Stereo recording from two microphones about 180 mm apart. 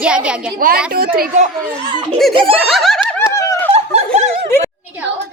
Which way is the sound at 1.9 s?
25° right (ahead or behind).